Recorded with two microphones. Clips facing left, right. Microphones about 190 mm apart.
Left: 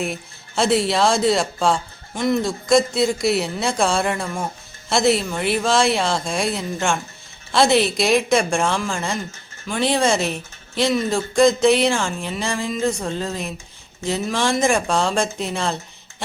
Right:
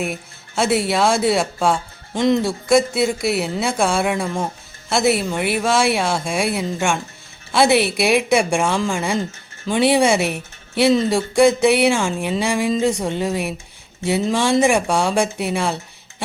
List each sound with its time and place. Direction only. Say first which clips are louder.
0.0 s speech: right 1 dB; 5° right (ahead or behind)
2.1 s speech: right 3 dB; 20° right (ahead or behind)
2.4 s speech: right 1 dB; 5° right (ahead or behind)
14.6 s speech: right 2 dB; 15° right (ahead or behind)